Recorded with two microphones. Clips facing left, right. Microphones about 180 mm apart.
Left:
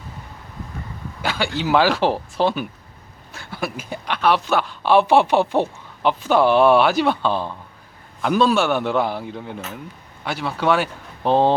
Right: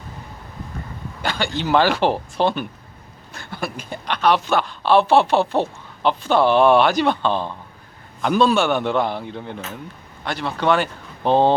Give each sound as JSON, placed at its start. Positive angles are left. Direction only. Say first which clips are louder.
{"t": 1.2, "sound": "a man's voice", "louder": "left 1 dB", "side_deg": 5}